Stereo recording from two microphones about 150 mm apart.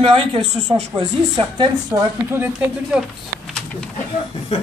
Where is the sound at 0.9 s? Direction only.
30° right (ahead or behind).